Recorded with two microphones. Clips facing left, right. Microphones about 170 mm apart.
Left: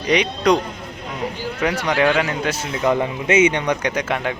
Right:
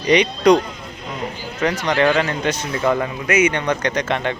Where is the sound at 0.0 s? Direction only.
Centre (ahead or behind).